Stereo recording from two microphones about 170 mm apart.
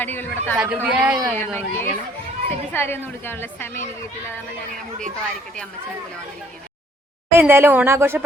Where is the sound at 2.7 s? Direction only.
15° left (ahead or behind).